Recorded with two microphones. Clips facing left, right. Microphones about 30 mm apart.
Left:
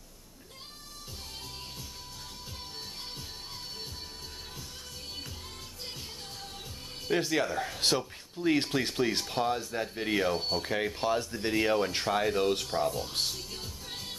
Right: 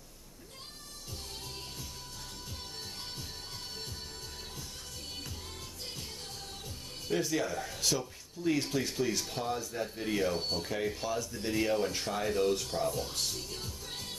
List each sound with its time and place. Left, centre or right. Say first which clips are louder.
7.1 s speech: left 3 dB; left
11.5 s speech: left 3 dB; left
12.8 s speech: left 2 dB; centre
13.3 s music: left 1 dB; centre